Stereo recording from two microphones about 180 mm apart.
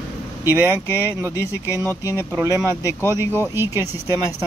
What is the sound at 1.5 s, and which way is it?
Speech, 15° left (ahead or behind).